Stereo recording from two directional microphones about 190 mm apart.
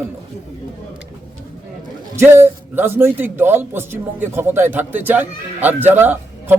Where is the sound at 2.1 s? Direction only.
15° right (ahead or behind).